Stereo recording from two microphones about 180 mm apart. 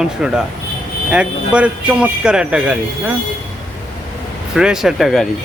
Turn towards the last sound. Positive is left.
turn(degrees=0)  # may be behind; listen again after turning